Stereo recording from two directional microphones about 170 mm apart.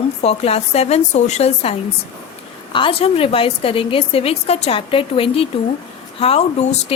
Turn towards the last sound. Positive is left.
turn(degrees=35)  # may be behind; listen again after turning